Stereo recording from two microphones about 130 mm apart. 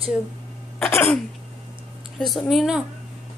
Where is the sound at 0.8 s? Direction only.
15° left (ahead or behind).